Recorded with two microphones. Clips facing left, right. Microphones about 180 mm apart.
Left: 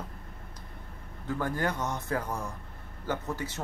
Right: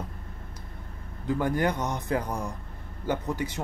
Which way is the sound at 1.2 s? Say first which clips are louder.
Right 5 dB; 15° right (ahead or behind).